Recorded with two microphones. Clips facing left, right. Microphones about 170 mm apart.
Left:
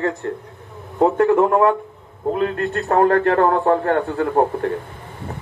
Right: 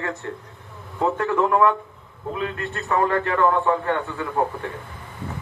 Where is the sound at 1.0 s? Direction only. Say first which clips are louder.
Left 7 dB; 40° left (ahead or behind).